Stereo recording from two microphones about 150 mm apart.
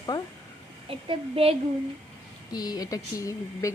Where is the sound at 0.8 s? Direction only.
40° right (ahead or behind).